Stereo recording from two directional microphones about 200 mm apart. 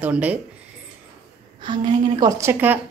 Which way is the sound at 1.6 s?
25° right (ahead or behind).